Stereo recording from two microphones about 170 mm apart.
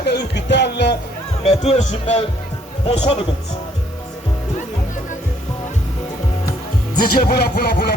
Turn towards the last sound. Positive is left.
turn(degrees=75)  # may be behind; listen again after turning